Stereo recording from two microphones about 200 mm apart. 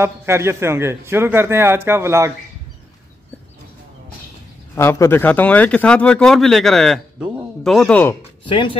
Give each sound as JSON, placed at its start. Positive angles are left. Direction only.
{"t": 0.0, "sound": "speech", "side_deg": -15}
{"t": 4.7, "sound": "speech", "side_deg": 15}
{"t": 8.5, "sound": "speech", "side_deg": 25}